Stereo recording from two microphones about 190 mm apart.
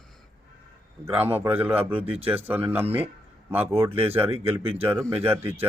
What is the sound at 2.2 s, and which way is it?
Speech, 10° right (ahead or behind).